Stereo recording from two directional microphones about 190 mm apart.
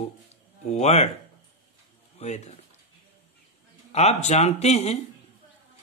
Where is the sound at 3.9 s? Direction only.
35° left (ahead or behind).